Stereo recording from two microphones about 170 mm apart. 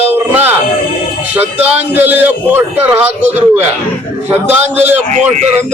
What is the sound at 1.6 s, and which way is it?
A man's voice, 10° right (ahead or behind).